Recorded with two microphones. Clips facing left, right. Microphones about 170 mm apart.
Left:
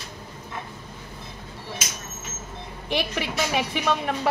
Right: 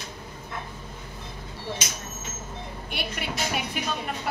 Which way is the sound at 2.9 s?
90° left.